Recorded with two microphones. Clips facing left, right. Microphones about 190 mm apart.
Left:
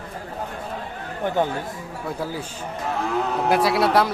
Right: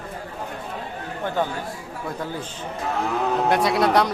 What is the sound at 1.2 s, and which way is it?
Speech, 15° left (ahead or behind).